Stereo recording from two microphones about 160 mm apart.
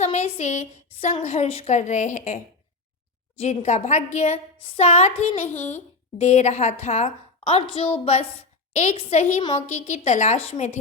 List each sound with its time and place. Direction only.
0.0 s a woman's voice: 45° left (ahead or behind)